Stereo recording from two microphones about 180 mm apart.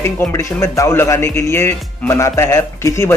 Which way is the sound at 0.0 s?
15° left (ahead or behind).